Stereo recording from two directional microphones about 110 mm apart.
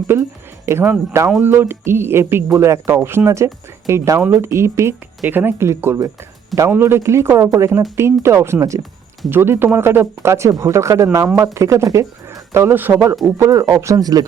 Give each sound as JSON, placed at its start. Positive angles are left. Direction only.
{"t": 0.1, "sound": "speech", "side_deg": -25}
{"t": 13.7, "sound": "speech", "side_deg": -35}